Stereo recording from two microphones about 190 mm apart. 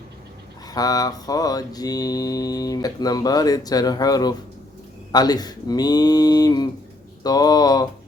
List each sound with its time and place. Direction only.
0.7 s mantra: 20° left (ahead or behind)